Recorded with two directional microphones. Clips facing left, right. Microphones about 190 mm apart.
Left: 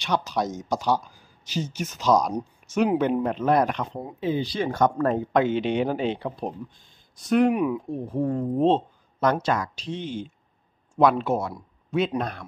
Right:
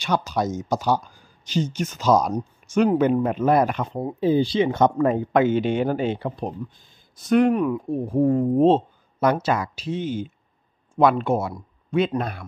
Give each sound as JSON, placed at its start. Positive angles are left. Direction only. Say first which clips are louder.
{"t": 0.0, "sound": "speech", "louder": "right 2 dB", "side_deg": 0}
{"t": 4.0, "sound": "speech", "louder": "right 8 dB", "side_deg": -30}
{"t": 4.9, "sound": "speech", "louder": "right 3 dB", "side_deg": -5}
{"t": 7.9, "sound": "speech", "louder": "right 6 dB", "side_deg": -10}